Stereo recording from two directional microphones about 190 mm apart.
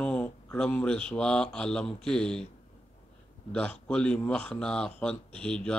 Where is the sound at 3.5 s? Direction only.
5° left (ahead or behind).